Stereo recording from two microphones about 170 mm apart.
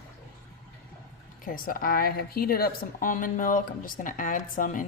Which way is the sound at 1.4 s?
55° left (ahead or behind).